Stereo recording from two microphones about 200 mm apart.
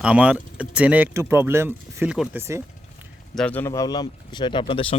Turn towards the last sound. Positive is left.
turn(degrees=25)  # may be behind; listen again after turning